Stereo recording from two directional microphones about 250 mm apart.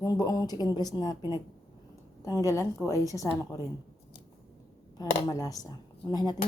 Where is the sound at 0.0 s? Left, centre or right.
Centre.